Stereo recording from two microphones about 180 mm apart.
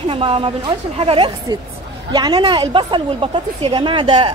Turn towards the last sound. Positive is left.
turn(degrees=-30)  # may be behind; listen again after turning